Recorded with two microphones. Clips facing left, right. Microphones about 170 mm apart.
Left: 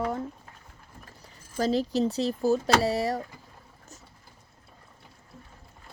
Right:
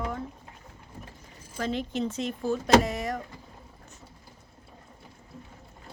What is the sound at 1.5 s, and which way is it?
Speech, 35° left (ahead or behind).